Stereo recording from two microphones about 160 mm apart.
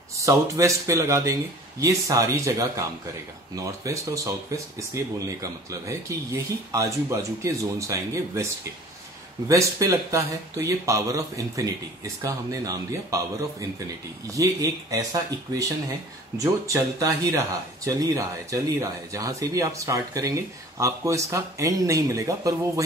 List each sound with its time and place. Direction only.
0.2 s speech: 20° right (ahead or behind)
3.5 s speech: 20° right (ahead or behind)
9.5 s speech: 20° right (ahead or behind)
16.3 s speech: 20° right (ahead or behind)